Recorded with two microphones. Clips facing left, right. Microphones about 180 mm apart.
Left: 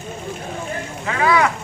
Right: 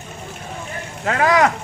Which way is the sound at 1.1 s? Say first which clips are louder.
Right 2 dB; 45° right (ahead or behind).